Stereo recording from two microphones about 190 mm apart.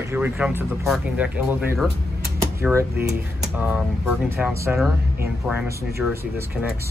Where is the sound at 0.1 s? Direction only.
10° right (ahead or behind).